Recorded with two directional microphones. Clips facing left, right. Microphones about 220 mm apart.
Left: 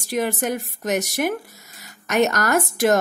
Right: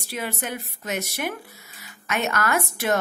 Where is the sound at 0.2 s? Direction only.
45° left (ahead or behind).